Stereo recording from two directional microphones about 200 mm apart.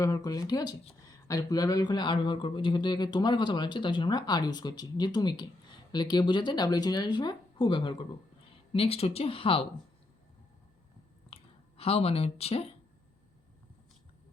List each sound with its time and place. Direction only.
0.0 s speech: 20° left (ahead or behind)
11.3 s speech: 30° left (ahead or behind)